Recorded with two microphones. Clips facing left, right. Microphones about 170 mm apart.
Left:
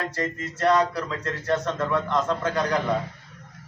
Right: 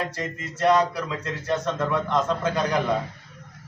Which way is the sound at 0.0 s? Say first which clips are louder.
Left 1 dB; 15° right (ahead or behind).